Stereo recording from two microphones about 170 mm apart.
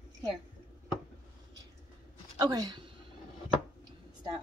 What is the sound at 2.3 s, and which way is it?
Speech, 20° right (ahead or behind).